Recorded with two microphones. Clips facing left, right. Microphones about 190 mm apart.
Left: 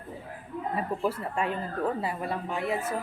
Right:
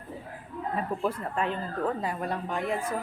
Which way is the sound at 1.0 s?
10° left (ahead or behind).